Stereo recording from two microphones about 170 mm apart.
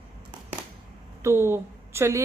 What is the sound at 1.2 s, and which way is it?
A woman's voice, 15° right (ahead or behind).